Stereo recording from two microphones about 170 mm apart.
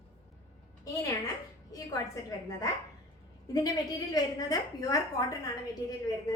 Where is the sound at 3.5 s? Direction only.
20° left (ahead or behind).